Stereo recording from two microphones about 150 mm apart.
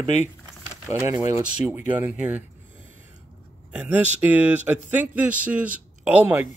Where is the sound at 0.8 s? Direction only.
20° right (ahead or behind).